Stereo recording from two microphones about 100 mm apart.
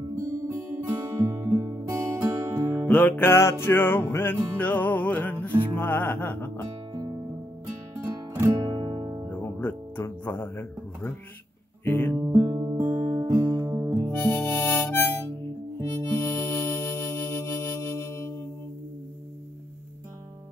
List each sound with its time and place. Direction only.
0.5 s music: 30° right (ahead or behind)
2.9 s music: 15° left (ahead or behind)
8.4 s music: 30° right (ahead or behind)
8.6 s music: 50° right (ahead or behind)
9.3 s music: 20° left (ahead or behind)
11.8 s guitar: 20° left (ahead or behind)
12.2 s music: 30° right (ahead or behind)
14.1 s harmonica: 20° left (ahead or behind)
15.8 s music: 30° left (ahead or behind)